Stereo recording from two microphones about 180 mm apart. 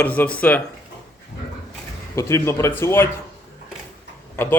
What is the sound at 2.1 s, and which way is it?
Speech, 15° left (ahead or behind).